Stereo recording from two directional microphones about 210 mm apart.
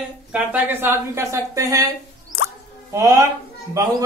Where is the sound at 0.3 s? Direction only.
10° right (ahead or behind).